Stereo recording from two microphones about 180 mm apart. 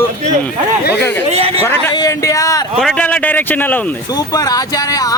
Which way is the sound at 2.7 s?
5° left (ahead or behind).